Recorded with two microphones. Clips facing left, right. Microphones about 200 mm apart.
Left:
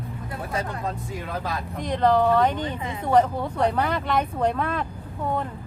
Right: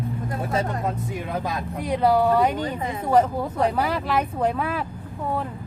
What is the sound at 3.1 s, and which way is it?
Speech, 5° right (ahead or behind).